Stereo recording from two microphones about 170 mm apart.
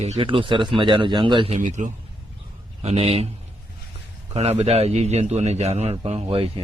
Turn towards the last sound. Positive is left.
turn(degrees=-35)  # may be behind; listen again after turning